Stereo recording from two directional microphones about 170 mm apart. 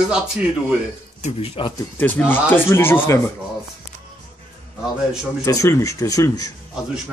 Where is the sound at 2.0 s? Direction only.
10° left (ahead or behind).